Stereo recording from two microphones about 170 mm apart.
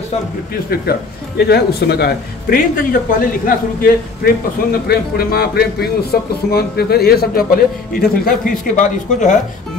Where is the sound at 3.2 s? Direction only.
55° left (ahead or behind).